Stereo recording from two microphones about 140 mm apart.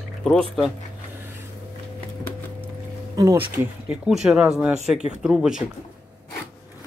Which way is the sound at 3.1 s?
25° right (ahead or behind).